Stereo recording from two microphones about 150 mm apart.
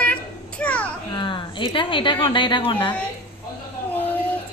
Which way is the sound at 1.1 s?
30° left (ahead or behind).